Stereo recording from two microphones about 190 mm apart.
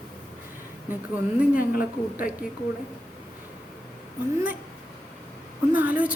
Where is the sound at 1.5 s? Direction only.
45° left (ahead or behind).